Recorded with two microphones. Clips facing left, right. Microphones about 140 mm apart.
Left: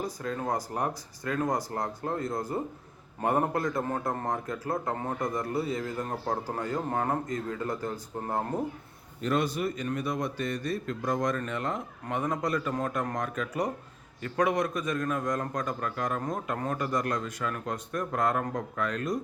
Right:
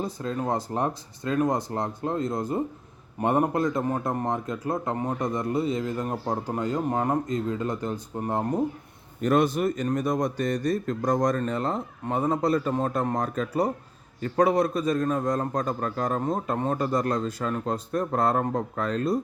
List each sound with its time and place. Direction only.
0.0 s a man's voice: 25° right (ahead or behind)
9.2 s a man's voice: 50° right (ahead or behind); by 19.2 s 30° right (ahead or behind)